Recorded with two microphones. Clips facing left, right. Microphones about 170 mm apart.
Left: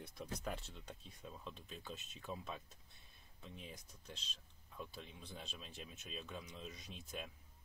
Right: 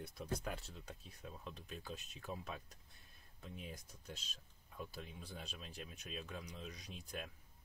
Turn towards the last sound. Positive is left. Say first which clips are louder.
# right 1 dB
turn(degrees=0)  # may be behind; listen again after turning